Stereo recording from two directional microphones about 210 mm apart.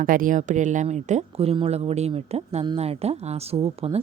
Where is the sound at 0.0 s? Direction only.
40° right (ahead or behind).